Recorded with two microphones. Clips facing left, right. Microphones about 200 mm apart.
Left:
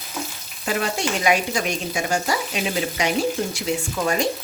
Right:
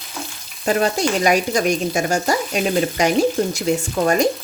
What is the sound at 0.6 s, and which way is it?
Frying, 40° right (ahead or behind).